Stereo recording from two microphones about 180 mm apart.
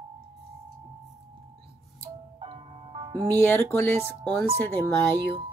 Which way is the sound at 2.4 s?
30° right (ahead or behind).